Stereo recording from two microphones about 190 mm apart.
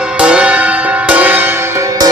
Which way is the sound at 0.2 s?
5° right (ahead or behind).